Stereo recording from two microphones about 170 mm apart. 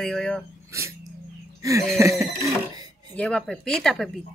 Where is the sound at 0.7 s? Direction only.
15° right (ahead or behind).